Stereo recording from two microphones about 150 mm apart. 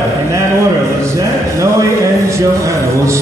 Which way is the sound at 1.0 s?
20° right (ahead or behind).